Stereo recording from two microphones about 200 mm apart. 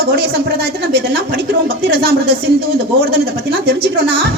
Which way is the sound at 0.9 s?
50° right (ahead or behind).